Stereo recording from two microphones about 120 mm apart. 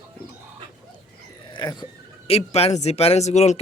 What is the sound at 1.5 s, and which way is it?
Speech, 35° left (ahead or behind).